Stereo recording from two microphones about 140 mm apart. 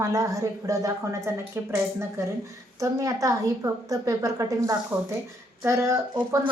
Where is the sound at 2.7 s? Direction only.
25° right (ahead or behind).